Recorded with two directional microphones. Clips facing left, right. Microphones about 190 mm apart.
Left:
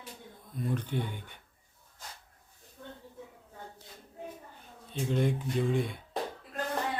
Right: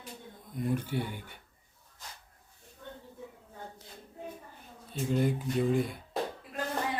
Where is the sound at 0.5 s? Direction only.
15° right (ahead or behind).